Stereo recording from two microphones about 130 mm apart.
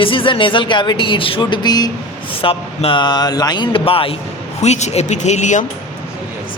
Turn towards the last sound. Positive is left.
turn(degrees=65)  # may be behind; listen again after turning